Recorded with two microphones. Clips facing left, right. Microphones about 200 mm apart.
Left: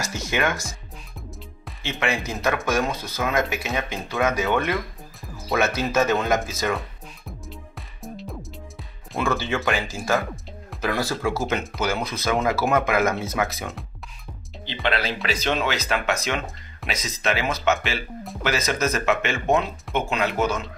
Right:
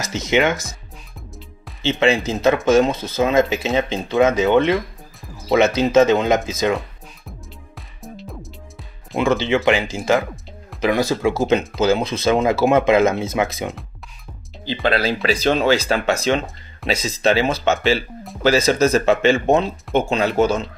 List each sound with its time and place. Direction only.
0.0 s speech: 20° right (ahead or behind)
1.8 s speech: 25° right (ahead or behind)
8.0 s music: centre (ahead or behind)
9.1 s speech: 20° right (ahead or behind)
14.7 s speech: 35° right (ahead or behind)